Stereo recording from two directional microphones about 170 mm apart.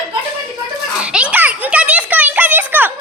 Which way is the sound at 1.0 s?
5° right (ahead or behind).